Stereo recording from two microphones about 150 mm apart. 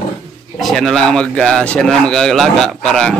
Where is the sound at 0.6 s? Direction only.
Centre (ahead or behind).